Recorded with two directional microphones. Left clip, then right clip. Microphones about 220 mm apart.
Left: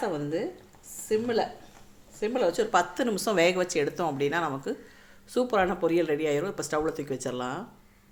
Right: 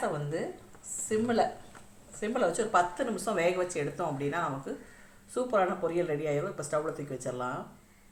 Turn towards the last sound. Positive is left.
turn(degrees=45)  # may be behind; listen again after turning